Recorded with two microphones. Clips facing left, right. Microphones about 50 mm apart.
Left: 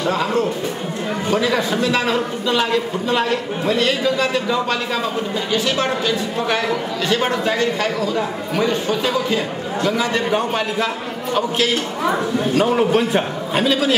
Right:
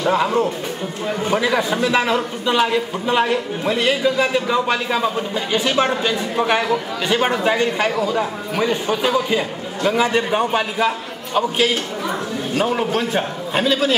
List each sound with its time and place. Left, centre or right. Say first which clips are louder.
0.0 s a man's voice: right 2 dB; centre
12.5 s a man's voice: left 3 dB; centre